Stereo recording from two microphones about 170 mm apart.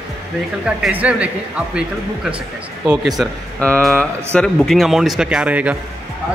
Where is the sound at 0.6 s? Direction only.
5° right (ahead or behind).